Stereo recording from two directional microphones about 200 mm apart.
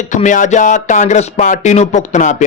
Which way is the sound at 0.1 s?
40° left (ahead or behind).